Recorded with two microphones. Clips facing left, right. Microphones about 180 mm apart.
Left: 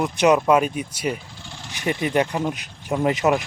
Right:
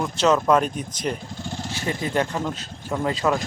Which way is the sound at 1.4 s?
45° right (ahead or behind).